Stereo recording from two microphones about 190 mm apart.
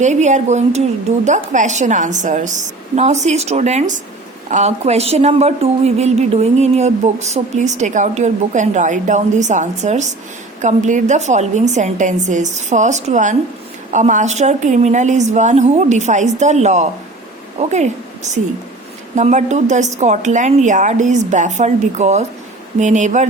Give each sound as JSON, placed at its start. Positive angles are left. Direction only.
{"t": 0.0, "sound": "a woman's voice", "side_deg": -40}